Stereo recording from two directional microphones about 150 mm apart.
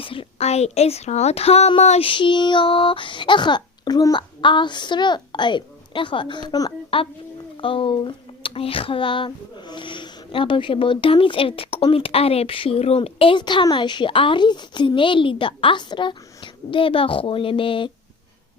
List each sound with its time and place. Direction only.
0.0 s a woman's voice: 35° left (ahead or behind)